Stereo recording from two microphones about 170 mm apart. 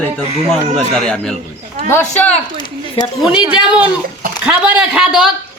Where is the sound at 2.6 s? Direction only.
25° left (ahead or behind).